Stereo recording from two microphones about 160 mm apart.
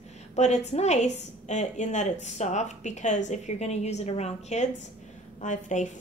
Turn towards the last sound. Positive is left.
turn(degrees=50)  # may be behind; listen again after turning